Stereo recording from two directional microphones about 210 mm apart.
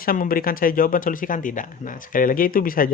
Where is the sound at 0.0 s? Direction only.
45° left (ahead or behind).